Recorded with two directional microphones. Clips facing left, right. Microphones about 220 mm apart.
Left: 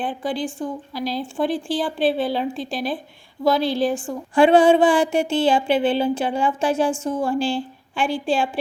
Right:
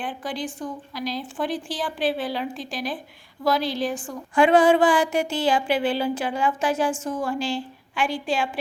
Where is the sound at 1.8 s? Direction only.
25° left (ahead or behind).